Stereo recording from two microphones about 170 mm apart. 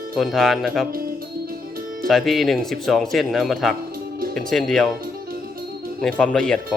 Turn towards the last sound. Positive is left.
turn(degrees=5)  # may be behind; listen again after turning